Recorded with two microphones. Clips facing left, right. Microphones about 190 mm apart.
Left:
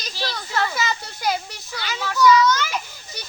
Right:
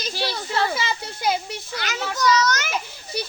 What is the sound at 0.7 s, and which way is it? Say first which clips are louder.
Speech: left 1 dB; 25° right (ahead or behind).